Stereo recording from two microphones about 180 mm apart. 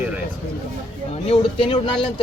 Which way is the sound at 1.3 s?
30° left (ahead or behind).